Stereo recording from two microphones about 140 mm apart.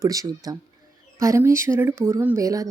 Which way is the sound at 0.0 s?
25° right (ahead or behind).